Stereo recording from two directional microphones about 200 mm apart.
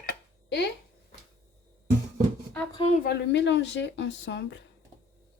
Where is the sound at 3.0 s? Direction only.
55° left (ahead or behind).